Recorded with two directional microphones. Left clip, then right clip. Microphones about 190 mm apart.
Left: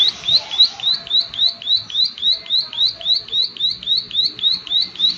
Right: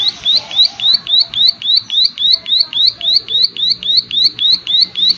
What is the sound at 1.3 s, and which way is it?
Alarm, 35° right (ahead or behind).